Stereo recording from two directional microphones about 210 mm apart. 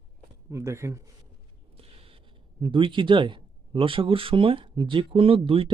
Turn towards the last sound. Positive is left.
turn(degrees=-25)  # may be behind; listen again after turning